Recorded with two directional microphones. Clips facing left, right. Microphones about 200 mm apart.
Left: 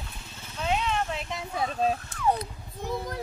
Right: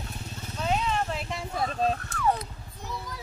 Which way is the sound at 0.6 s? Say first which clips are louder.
Even; centre (ahead or behind).